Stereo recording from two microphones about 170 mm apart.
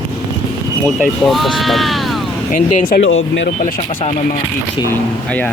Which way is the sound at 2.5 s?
55° left (ahead or behind).